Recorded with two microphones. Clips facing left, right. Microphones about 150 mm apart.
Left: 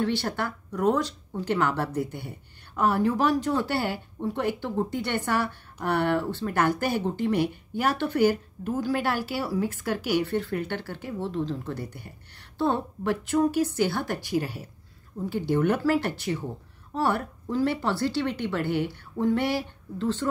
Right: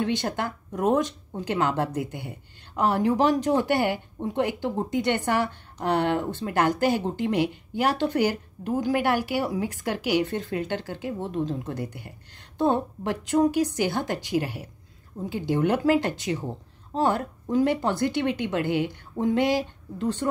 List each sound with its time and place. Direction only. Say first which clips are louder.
0.0 s a woman's voice: right 1 dB; 20° right (ahead or behind)